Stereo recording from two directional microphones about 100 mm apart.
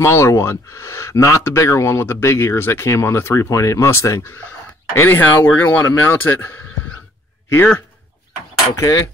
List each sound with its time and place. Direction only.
0.0 s speech: 30° left (ahead or behind)
8.7 s speech: 30° left (ahead or behind)